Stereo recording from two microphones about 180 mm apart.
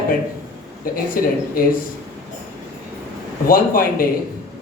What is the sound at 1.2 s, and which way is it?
Speech, 55° left (ahead or behind).